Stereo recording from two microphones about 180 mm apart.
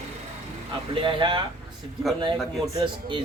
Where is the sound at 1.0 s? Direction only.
25° right (ahead or behind).